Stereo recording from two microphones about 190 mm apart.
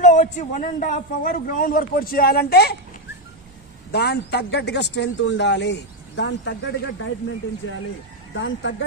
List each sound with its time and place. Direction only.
0.0 s a man's voice: 40° left (ahead or behind); by 2.7 s 55° left (ahead or behind)
3.9 s speech: 60° left (ahead or behind); by 7.8 s 90° left
8.4 s speech: 75° left (ahead or behind)